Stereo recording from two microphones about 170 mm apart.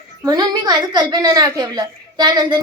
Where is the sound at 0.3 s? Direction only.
25° right (ahead or behind).